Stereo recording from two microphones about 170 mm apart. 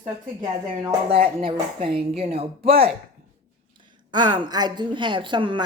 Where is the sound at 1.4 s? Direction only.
35° right (ahead or behind).